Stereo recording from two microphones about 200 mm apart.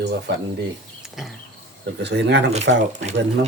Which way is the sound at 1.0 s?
Centre (ahead or behind).